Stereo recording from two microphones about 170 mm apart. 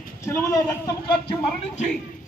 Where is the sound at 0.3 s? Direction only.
15° left (ahead or behind).